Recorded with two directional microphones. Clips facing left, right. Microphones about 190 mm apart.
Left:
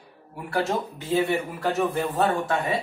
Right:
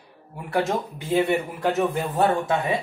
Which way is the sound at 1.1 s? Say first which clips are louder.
Right 2 dB; 15° right (ahead or behind).